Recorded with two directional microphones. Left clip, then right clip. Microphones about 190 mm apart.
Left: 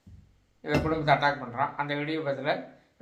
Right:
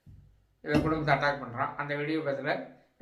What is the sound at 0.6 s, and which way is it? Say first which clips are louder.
A man's voice: left 1 dB; 20° left (ahead or behind).